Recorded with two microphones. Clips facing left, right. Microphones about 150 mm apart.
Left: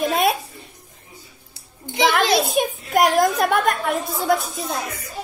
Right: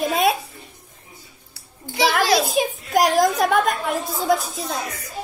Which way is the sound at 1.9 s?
20° left (ahead or behind).